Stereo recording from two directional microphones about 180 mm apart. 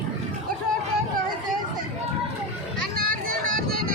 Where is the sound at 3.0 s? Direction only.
55° right (ahead or behind).